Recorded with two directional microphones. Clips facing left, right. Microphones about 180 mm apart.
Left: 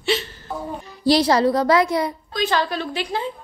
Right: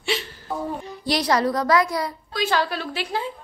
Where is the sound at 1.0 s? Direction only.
30° left (ahead or behind).